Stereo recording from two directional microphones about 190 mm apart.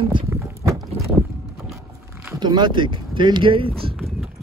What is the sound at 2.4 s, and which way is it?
Speech, 25° right (ahead or behind).